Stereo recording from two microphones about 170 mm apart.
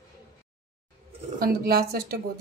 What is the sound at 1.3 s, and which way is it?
Speech, 65° right (ahead or behind).